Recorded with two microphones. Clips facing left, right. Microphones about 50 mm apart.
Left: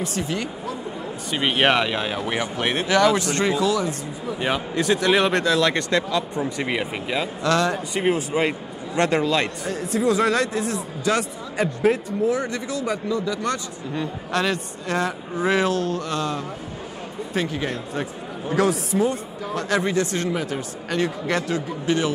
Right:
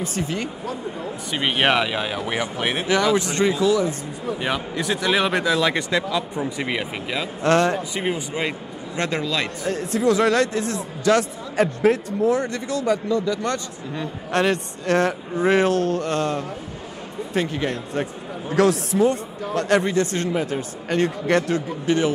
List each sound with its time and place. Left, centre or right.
0.0 s speech: right
1.3 s speech: centre
2.9 s speech: centre
4.4 s speech: centre
6.4 s speech: centre
7.4 s speech: right
8.3 s a man's voice: centre
8.9 s a man's voice: centre
9.7 s speech: right
15.4 s speech: right
18.6 s speech: right
21.8 s speech: right